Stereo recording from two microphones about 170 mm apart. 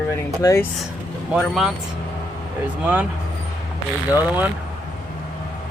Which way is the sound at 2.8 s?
10° right (ahead or behind).